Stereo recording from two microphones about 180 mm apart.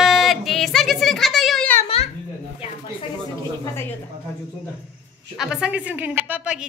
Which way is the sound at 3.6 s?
15° left (ahead or behind).